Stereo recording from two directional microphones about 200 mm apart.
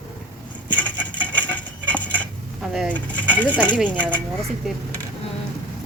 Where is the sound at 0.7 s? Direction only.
5° left (ahead or behind).